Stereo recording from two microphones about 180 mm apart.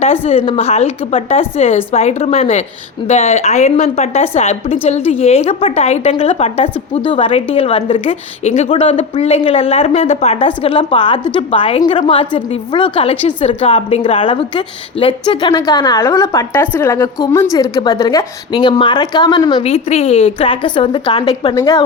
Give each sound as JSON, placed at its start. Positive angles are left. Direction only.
{"t": 0.0, "sound": "a woman's voice", "side_deg": 35}
{"t": 19.6, "sound": "a woman's voice", "side_deg": 35}
{"t": 21.5, "sound": "a woman's voice", "side_deg": 15}